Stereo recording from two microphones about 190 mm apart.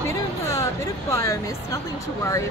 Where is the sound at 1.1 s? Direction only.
15° left (ahead or behind).